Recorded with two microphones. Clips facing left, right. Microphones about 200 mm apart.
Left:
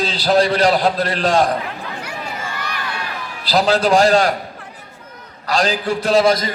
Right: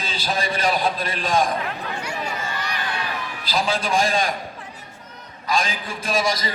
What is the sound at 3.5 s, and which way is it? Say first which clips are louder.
Speech: left 9 dB; 70° left (ahead or behind).